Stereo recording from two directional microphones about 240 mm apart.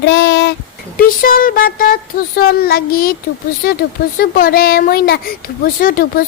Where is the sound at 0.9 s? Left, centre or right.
Left.